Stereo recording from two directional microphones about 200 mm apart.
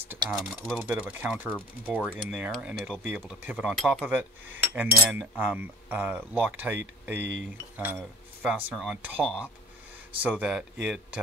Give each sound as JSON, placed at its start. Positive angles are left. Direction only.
{"t": 0.1, "sound": "speech", "side_deg": -5}
{"t": 7.2, "sound": "speech", "side_deg": -60}
{"t": 7.7, "sound": "speech", "side_deg": -10}